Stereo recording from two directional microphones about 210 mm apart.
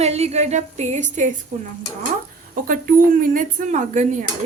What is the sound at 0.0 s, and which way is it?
Speech, 30° right (ahead or behind).